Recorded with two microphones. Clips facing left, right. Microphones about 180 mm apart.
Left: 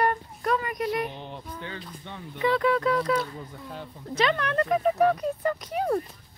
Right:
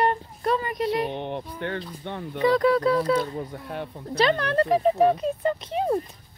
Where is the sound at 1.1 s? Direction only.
60° right (ahead or behind).